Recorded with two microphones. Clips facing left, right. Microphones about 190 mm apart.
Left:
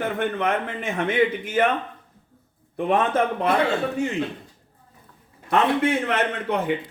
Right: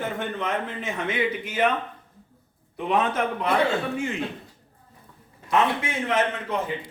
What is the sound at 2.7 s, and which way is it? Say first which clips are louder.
Speech: left 3 dB; 50° left (ahead or behind).